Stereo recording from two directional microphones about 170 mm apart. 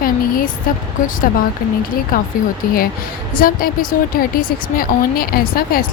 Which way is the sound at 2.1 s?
55° left (ahead or behind).